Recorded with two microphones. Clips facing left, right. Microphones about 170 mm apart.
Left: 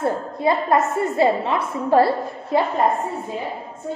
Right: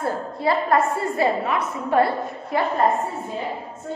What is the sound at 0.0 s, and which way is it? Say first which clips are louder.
A woman's voice: left 3 dB; 20° left (ahead or behind).